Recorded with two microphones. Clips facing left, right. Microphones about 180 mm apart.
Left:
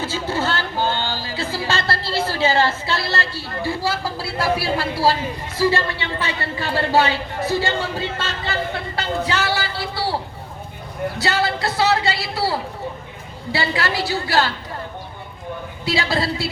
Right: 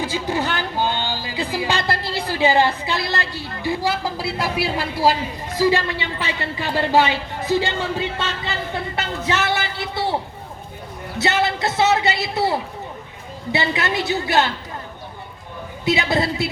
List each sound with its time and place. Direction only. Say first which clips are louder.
0.0 s a woman's voice: even; 15° right (ahead or behind)
11.2 s a man's voice: right 3 dB; 20° right (ahead or behind)
15.8 s a man's voice: right 3 dB; 20° right (ahead or behind)